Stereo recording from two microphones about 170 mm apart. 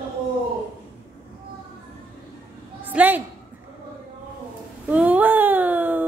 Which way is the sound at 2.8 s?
10° right (ahead or behind).